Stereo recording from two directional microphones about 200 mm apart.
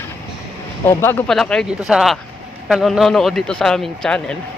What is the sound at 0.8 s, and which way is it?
A man's voice, 10° left (ahead or behind).